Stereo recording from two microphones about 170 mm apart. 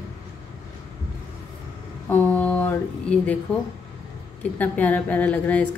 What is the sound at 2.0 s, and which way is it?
A woman's voice, 15° left (ahead or behind).